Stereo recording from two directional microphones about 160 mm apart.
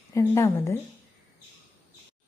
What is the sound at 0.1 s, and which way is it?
Speech, 20° left (ahead or behind).